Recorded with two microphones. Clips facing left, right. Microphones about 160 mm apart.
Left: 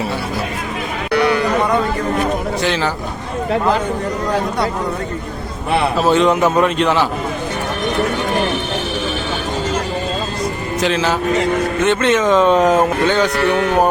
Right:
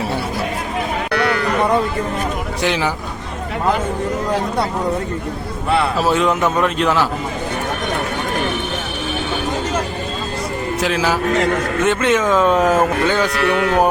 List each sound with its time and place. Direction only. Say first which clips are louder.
1.1 s sheep: left 5 dB; 20° left (ahead or behind)
2.6 s speech: right 3 dB; 15° right (ahead or behind)
6.1 s a man's voice: left 5 dB; 5° right (ahead or behind)
10.8 s a man's voice: left 2 dB; 5° right (ahead or behind)
13.4 s speech: left 1 dB; 25° left (ahead or behind)